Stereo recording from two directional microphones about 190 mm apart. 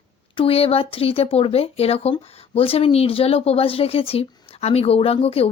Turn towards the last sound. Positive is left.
turn(degrees=30)  # may be behind; listen again after turning